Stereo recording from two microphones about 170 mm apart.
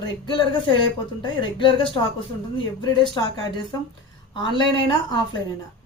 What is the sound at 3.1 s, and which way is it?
Speech, 25° left (ahead or behind).